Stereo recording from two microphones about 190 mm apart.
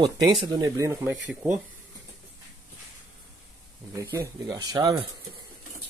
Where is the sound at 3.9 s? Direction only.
15° right (ahead or behind).